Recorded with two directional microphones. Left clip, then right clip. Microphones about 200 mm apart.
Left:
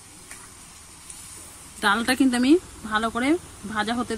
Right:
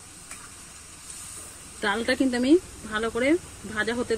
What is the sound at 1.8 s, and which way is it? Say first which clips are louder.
Speech: left 4 dB; 45° left (ahead or behind).